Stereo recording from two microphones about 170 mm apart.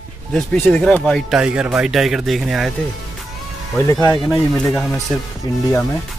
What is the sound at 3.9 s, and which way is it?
Speech, 20° left (ahead or behind).